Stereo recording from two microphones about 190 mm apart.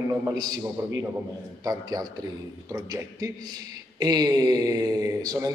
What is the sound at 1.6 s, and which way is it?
Speech, 20° right (ahead or behind).